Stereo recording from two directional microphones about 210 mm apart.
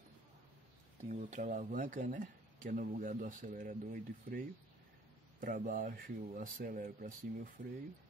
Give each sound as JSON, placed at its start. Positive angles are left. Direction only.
{"t": 1.0, "sound": "speech", "side_deg": -35}
{"t": 5.4, "sound": "speech", "side_deg": -40}